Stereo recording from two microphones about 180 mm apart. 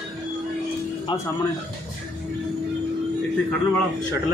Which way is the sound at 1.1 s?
25° left (ahead or behind).